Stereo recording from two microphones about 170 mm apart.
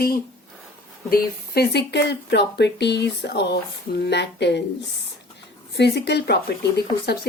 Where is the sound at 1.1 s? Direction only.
75° left (ahead or behind).